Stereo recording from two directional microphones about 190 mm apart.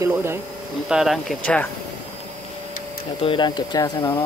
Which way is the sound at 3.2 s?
25° left (ahead or behind).